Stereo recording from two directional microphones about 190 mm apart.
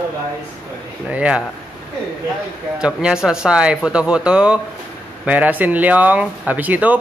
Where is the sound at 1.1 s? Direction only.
5° right (ahead or behind).